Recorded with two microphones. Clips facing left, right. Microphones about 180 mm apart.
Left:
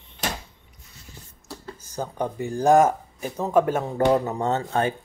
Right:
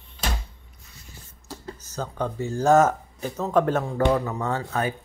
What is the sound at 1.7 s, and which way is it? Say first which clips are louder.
Speech: left 2 dB; 15° left (ahead or behind).